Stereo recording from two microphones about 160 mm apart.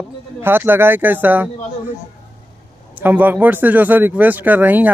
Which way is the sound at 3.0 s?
10° right (ahead or behind).